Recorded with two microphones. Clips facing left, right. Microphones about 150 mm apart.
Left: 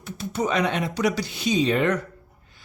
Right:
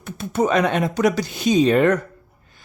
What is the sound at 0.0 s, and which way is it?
Speech, 55° right (ahead or behind).